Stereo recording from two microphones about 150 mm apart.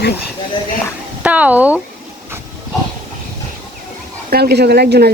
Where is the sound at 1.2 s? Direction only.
10° right (ahead or behind).